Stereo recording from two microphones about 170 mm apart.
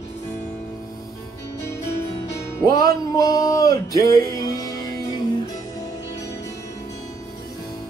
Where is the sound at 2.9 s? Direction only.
20° left (ahead or behind).